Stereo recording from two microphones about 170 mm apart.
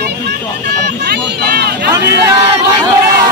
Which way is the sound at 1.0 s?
70° right (ahead or behind).